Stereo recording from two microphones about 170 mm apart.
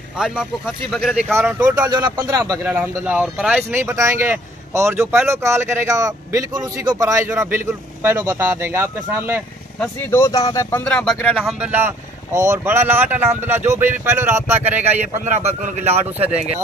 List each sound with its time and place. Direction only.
0.2 s speech: centre (ahead or behind)
1.8 s speech: 25° right (ahead or behind)
10.1 s speech: 20° left (ahead or behind)
11.6 s speech: 10° right (ahead or behind)
14.9 s a man's voice: 40° right (ahead or behind)